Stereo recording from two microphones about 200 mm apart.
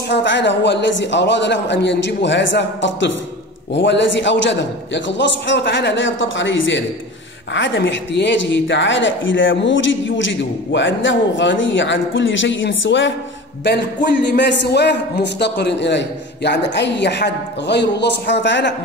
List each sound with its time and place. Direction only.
0.1 s a man's voice: 65° left (ahead or behind)
14.2 s a man's voice: 60° left (ahead or behind)